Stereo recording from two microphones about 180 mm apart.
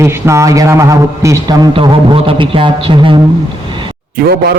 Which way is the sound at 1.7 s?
30° right (ahead or behind).